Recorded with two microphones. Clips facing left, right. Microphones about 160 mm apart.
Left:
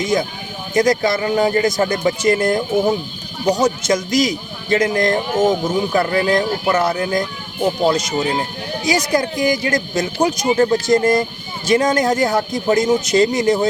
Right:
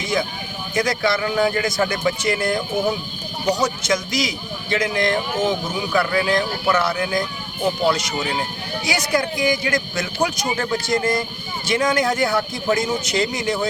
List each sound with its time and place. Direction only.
0.8 s a woman's voice: 45° left (ahead or behind)
3.6 s a man's voice: 50° left (ahead or behind)
10.2 s a woman's voice: 30° left (ahead or behind); by 13.6 s 45° left (ahead or behind)